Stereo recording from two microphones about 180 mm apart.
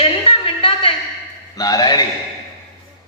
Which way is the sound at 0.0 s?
30° left (ahead or behind).